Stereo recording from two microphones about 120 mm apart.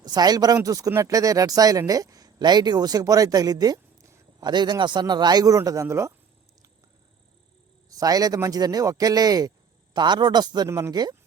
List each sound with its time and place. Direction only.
0.0 s speech: 35° right (ahead or behind)
7.9 s speech: 30° right (ahead or behind)
10.7 s speech: 25° right (ahead or behind)